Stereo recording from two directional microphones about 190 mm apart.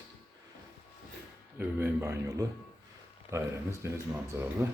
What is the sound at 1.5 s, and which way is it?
Speech, 10° right (ahead or behind).